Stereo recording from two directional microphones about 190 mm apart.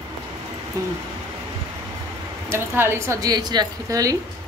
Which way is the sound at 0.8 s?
20° right (ahead or behind).